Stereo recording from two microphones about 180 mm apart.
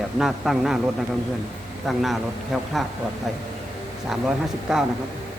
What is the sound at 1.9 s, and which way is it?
Speech, centre (ahead or behind).